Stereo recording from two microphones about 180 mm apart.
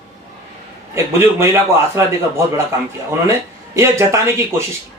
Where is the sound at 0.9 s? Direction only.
15° right (ahead or behind).